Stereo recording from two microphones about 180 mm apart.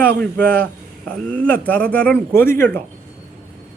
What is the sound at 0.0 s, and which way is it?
A man's voice, 10° left (ahead or behind).